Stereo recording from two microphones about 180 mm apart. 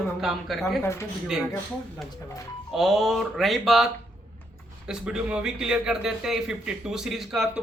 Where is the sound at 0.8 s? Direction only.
15° left (ahead or behind).